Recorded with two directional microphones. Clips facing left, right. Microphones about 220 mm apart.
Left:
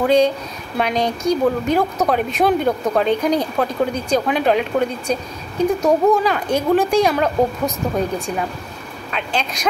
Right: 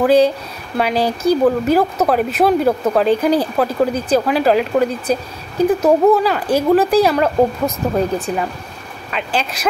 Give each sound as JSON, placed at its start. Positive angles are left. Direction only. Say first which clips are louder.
{"t": 0.0, "sound": "speech", "louder": "right 3 dB", "side_deg": -5}
{"t": 9.1, "sound": "speech", "louder": "right 2 dB", "side_deg": -5}